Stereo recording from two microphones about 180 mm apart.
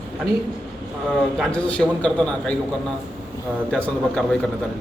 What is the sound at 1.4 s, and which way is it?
A man's voice, 5° left (ahead or behind).